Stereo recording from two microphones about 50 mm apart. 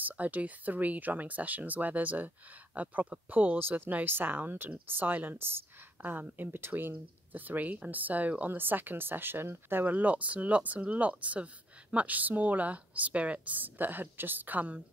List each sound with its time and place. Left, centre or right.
0.0 s speech: right